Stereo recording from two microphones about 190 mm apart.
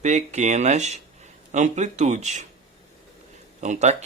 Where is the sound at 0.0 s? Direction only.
40° right (ahead or behind).